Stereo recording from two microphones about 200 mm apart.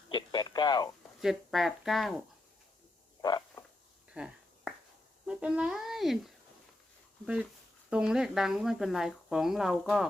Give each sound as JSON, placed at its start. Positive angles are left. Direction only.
{"t": 0.1, "sound": "radio", "side_deg": 20}
{"t": 1.2, "sound": "speech", "side_deg": 0}
{"t": 3.2, "sound": "a sound", "side_deg": 20}
{"t": 4.1, "sound": "a sound", "side_deg": -5}
{"t": 5.2, "sound": "speech", "side_deg": -5}
{"t": 7.9, "sound": "speech", "side_deg": -5}